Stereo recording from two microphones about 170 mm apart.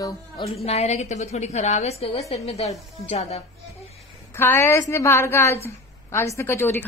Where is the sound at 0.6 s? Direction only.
40° left (ahead or behind).